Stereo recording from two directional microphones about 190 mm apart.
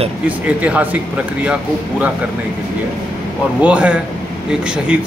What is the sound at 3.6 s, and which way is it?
Speech, 5° right (ahead or behind).